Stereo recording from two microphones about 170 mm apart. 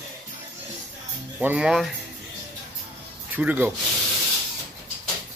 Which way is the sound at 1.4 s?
5° right (ahead or behind).